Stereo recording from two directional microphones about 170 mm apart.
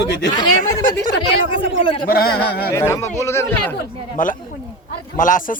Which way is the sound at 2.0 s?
65° left (ahead or behind).